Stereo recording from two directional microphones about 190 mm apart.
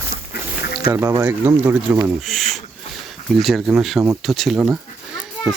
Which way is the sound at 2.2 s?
Centre (ahead or behind).